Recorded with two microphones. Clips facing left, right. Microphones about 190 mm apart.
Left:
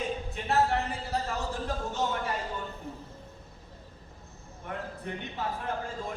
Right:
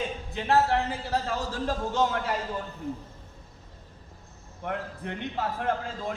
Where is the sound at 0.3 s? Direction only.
90° right.